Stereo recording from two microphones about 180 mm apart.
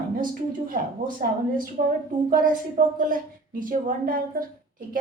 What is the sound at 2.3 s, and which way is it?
A woman's voice, 50° right (ahead or behind).